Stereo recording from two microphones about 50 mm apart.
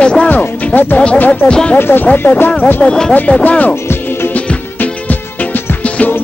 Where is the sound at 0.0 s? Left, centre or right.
Centre.